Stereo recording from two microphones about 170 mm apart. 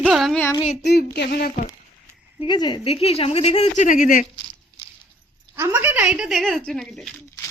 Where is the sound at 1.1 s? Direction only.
70° left (ahead or behind).